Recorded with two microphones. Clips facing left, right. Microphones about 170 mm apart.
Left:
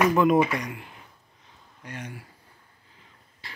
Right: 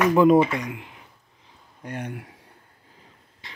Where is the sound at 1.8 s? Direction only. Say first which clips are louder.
Right 6 dB; 60° right (ahead or behind).